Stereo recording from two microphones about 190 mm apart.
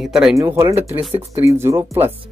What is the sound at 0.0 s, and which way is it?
Speech, 5° right (ahead or behind).